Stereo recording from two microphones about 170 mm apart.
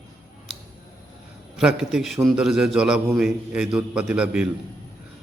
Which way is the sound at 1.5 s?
Centre (ahead or behind).